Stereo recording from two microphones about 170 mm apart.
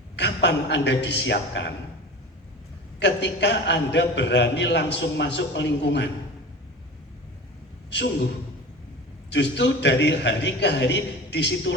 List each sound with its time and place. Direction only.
0.2 s a man's voice: 90° left
3.0 s a man's voice: 90° left
7.9 s a man's voice: 90° left
9.3 s a man's voice: 90° left